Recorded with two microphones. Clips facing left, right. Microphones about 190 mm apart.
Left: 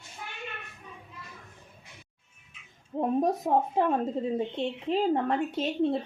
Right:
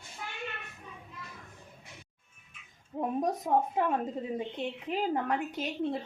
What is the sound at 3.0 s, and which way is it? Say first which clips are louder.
A woman's voice: left 5 dB; 25° left (ahead or behind).